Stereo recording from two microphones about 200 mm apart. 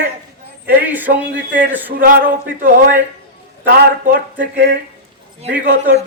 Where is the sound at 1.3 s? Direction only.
60° right (ahead or behind).